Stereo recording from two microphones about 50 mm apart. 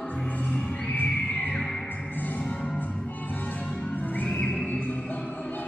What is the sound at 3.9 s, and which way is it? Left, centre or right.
Music, left.